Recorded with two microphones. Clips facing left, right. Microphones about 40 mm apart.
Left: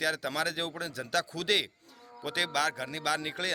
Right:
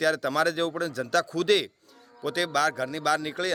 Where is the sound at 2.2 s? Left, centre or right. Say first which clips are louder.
Right 5 dB; centre.